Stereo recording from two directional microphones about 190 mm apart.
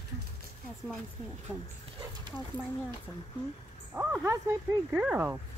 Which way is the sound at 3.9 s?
15° right (ahead or behind).